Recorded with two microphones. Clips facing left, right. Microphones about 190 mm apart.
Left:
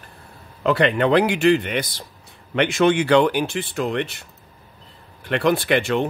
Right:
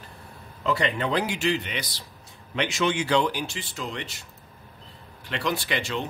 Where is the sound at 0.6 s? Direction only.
65° left (ahead or behind).